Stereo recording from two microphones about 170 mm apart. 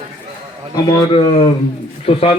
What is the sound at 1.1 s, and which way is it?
Speech, 35° left (ahead or behind).